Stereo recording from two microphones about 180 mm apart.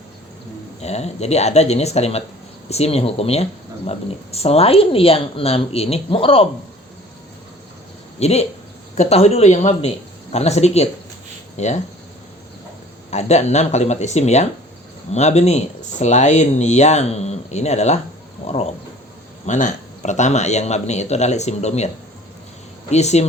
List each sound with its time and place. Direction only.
0.8 s speech: 35° left (ahead or behind)
8.2 s speech: 35° left (ahead or behind)
13.1 s speech: 40° left (ahead or behind)
22.9 s speech: 40° left (ahead or behind)